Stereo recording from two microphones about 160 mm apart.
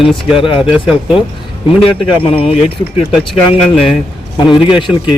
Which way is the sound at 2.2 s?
35° left (ahead or behind).